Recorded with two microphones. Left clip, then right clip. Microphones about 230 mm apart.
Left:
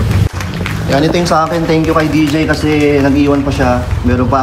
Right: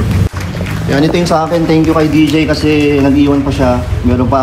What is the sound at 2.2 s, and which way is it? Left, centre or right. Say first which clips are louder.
Speech: right 2 dB; centre.